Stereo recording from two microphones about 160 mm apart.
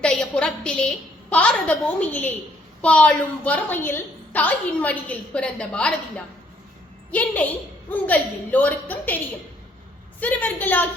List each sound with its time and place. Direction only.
0.0 s a woman's voice: 5° left (ahead or behind)